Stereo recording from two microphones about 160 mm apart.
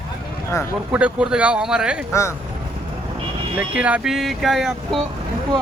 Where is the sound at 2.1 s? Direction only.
15° left (ahead or behind).